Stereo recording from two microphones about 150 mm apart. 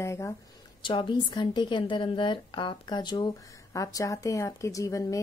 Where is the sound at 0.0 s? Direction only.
20° left (ahead or behind).